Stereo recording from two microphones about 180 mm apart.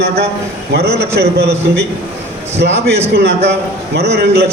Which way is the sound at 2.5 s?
75° right (ahead or behind).